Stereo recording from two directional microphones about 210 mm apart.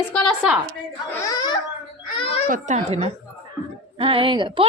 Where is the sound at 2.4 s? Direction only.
40° right (ahead or behind).